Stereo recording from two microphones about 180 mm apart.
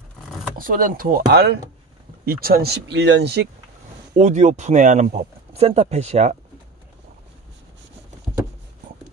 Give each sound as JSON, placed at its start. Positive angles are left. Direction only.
{"t": 0.6, "sound": "speech", "side_deg": -50}
{"t": 4.2, "sound": "speech", "side_deg": -40}